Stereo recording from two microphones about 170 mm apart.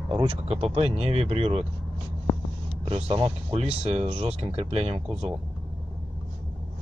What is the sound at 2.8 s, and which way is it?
Speech, 35° right (ahead or behind).